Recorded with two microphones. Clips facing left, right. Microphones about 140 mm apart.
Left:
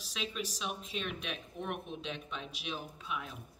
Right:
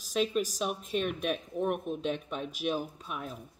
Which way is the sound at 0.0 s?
45° right (ahead or behind).